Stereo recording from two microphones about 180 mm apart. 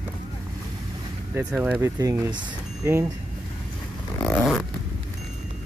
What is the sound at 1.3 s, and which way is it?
Speech, 10° right (ahead or behind).